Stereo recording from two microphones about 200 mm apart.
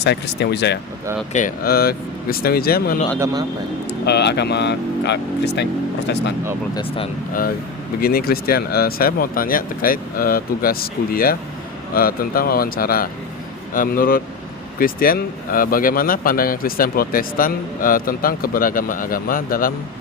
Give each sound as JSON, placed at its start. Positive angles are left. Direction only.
{"t": 0.0, "sound": "speech", "side_deg": 60}
{"t": 1.3, "sound": "speech", "side_deg": 40}
{"t": 6.7, "sound": "speech", "side_deg": 30}
{"t": 8.0, "sound": "speech", "side_deg": 50}